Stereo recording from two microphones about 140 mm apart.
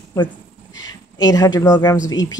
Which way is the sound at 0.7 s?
30° left (ahead or behind).